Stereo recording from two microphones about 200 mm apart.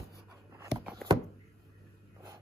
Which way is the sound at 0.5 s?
15° right (ahead or behind).